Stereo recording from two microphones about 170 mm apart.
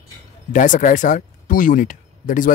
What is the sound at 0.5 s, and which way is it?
Speech, 50° left (ahead or behind).